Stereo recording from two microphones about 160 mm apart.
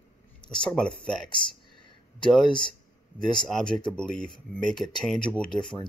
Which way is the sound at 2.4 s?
30° left (ahead or behind).